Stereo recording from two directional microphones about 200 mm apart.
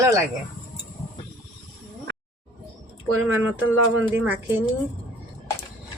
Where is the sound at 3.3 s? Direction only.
10° right (ahead or behind).